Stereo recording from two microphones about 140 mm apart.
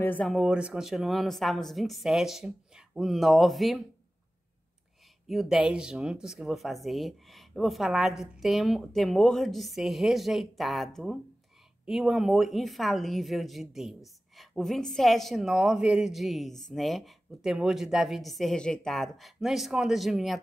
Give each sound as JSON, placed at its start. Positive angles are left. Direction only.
{"t": 0.0, "sound": "speech", "side_deg": 15}
{"t": 0.3, "sound": "speech", "side_deg": -5}
{"t": 5.3, "sound": "speech", "side_deg": 0}